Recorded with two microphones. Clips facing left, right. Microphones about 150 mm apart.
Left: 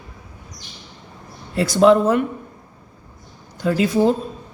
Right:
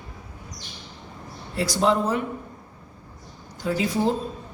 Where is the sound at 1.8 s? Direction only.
65° left (ahead or behind).